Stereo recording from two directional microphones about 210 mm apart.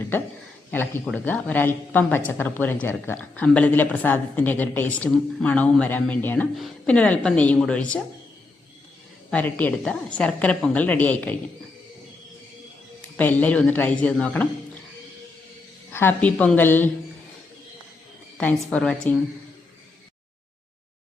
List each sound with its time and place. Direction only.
0.7 s a woman's voice: 10° left (ahead or behind)
9.3 s a woman's voice: 10° left (ahead or behind)
13.1 s a woman's voice: 10° left (ahead or behind)
15.9 s a woman's voice: 10° left (ahead or behind)
18.3 s a woman's voice: 5° left (ahead or behind)